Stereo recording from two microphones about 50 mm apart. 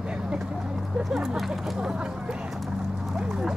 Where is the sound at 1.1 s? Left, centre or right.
Centre.